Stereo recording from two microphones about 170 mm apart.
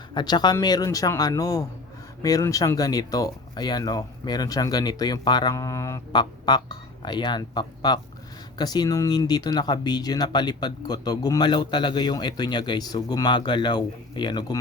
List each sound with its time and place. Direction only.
0.1 s speech: 25° left (ahead or behind)